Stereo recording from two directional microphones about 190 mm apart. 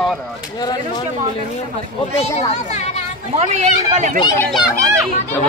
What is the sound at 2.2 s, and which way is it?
Speech, 30° left (ahead or behind).